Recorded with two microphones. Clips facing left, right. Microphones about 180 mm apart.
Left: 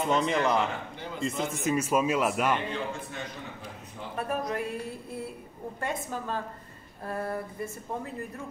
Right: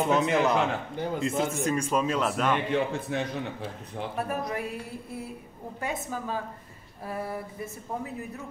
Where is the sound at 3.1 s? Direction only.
70° right (ahead or behind).